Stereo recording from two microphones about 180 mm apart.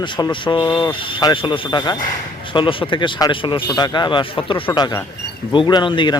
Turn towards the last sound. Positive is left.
turn(degrees=25)  # may be behind; listen again after turning